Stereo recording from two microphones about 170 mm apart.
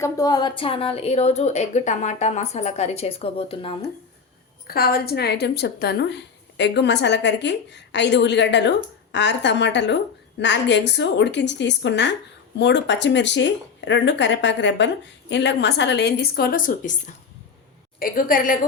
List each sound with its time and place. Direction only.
0.0 s a woman's voice: 20° left (ahead or behind)
4.6 s a woman's voice: 65° left (ahead or behind)
18.0 s a woman's voice: 55° left (ahead or behind)